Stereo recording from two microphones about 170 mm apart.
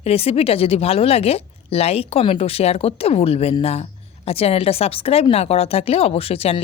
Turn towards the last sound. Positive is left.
turn(degrees=35)  # may be behind; listen again after turning